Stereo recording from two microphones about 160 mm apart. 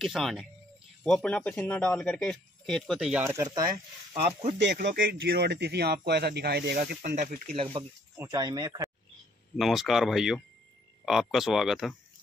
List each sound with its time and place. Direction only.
0.0 s speech: centre (ahead or behind)
4.1 s speech: 45° right (ahead or behind)
4.6 s speech: 90° right; by 7.2 s 70° right (ahead or behind)
7.5 s speech: 35° right (ahead or behind)
8.2 s speech: 20° right (ahead or behind)
9.6 s speech: centre (ahead or behind)